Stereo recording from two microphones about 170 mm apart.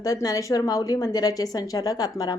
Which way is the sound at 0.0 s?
20° left (ahead or behind).